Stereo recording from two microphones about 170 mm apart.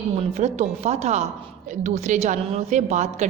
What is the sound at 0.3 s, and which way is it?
A woman's voice, 40° right (ahead or behind).